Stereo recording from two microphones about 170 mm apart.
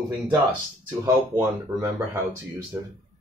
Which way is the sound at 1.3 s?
20° right (ahead or behind).